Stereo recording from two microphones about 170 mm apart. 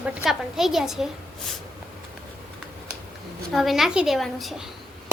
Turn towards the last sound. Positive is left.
turn(degrees=0)  # may be behind; listen again after turning